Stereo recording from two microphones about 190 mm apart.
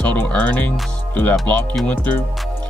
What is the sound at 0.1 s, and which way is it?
Speech, 10° left (ahead or behind).